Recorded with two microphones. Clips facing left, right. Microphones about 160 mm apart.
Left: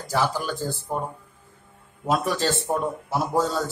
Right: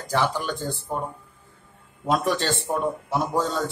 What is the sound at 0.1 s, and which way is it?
Speech, 5° left (ahead or behind).